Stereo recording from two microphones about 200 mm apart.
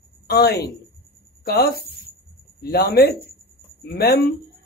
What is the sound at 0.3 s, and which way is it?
A man's voice, 50° left (ahead or behind).